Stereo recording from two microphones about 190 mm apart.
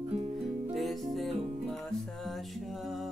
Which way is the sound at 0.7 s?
Centre (ahead or behind).